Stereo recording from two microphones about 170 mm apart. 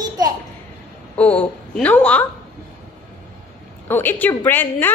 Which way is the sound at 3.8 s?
10° left (ahead or behind).